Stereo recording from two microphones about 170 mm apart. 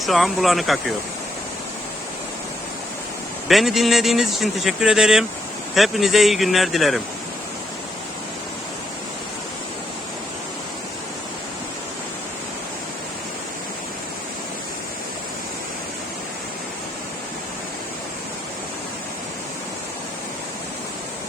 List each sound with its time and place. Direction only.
0.0 s speech: centre (ahead or behind)
3.5 s speech: centre (ahead or behind)